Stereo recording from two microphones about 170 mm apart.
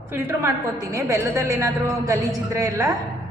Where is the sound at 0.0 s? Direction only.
15° right (ahead or behind).